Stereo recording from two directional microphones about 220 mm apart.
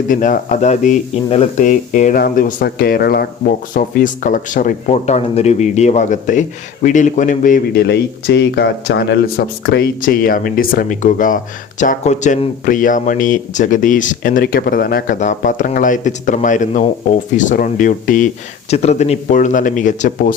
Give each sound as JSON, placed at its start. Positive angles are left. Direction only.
{"t": 0.1, "sound": "speech", "side_deg": 35}